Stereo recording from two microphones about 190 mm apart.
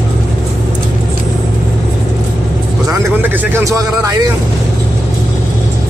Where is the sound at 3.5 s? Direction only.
15° right (ahead or behind).